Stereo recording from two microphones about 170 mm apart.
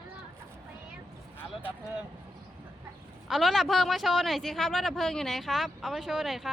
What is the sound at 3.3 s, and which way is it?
A man's voice, centre (ahead or behind).